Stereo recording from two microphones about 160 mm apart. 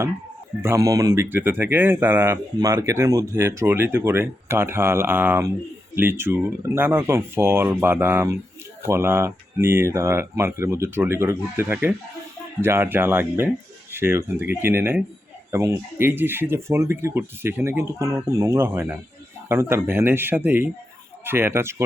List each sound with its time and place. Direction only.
0.6 s speech: 20° right (ahead or behind)